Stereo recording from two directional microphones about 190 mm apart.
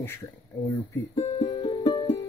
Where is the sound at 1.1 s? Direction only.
30° left (ahead or behind).